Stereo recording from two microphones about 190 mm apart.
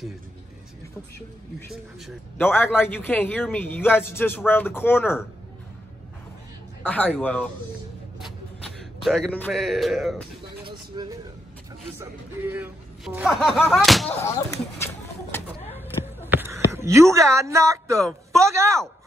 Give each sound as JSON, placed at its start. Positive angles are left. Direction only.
{"t": 1.7, "sound": "speech", "side_deg": 0}
{"t": 2.3, "sound": "a man's voice", "side_deg": 10}
{"t": 6.8, "sound": "a man's voice", "side_deg": 10}
{"t": 10.7, "sound": "a sound", "side_deg": -20}
{"t": 12.0, "sound": "speech", "side_deg": -10}
{"t": 14.2, "sound": "a man's voice", "side_deg": 15}
{"t": 15.7, "sound": "a sound", "side_deg": -10}
{"t": 16.3, "sound": "speech", "side_deg": -10}